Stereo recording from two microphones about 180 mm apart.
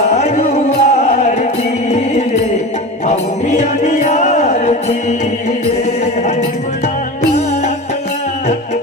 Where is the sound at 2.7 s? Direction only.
40° left (ahead or behind).